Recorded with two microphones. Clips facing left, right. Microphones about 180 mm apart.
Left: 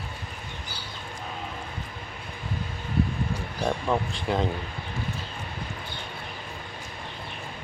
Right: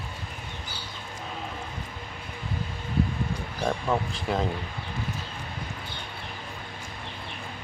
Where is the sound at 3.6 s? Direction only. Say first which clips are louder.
Left 1 dB; centre (ahead or behind).